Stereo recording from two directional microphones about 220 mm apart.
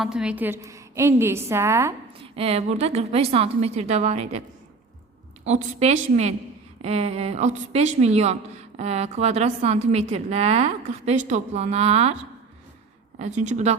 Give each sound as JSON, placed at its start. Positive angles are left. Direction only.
{"t": 0.0, "sound": "a woman's voice", "side_deg": -5}
{"t": 2.3, "sound": "a woman's voice", "side_deg": -25}
{"t": 5.5, "sound": "a woman's voice", "side_deg": -30}
{"t": 13.1, "sound": "a woman's voice", "side_deg": -30}